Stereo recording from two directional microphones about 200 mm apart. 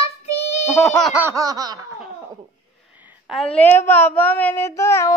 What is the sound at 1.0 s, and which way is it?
Laughter, 10° right (ahead or behind).